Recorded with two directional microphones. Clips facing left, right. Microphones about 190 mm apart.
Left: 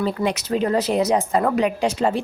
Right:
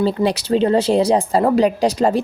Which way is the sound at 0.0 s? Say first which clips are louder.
Right 5 dB; 30° right (ahead or behind).